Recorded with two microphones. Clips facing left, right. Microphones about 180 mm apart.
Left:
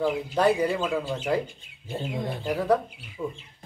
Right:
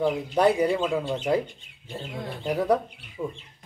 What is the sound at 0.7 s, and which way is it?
Speech, 5° left (ahead or behind).